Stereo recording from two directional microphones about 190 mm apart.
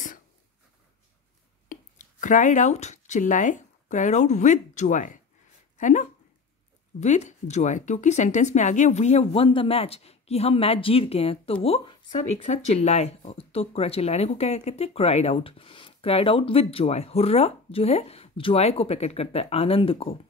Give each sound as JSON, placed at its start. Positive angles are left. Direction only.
{"t": 1.7, "sound": "speech", "side_deg": 45}
{"t": 12.1, "sound": "speech", "side_deg": 40}